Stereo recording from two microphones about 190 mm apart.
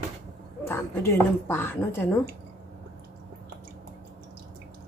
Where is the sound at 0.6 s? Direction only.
15° left (ahead or behind).